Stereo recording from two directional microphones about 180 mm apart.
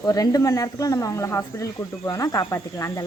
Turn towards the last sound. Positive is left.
turn(degrees=15)  # may be behind; listen again after turning